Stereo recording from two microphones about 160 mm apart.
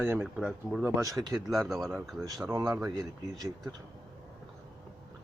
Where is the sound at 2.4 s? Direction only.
15° right (ahead or behind).